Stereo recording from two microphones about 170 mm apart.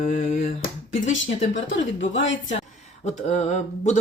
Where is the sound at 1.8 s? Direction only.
90° left.